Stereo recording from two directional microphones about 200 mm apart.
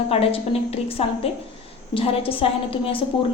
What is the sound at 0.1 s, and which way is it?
Speech, 30° left (ahead or behind).